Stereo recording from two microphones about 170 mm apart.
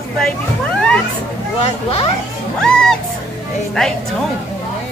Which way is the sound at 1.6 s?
35° left (ahead or behind).